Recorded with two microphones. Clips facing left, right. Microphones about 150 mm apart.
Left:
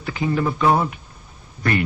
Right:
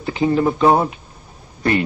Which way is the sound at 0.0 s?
25° right (ahead or behind).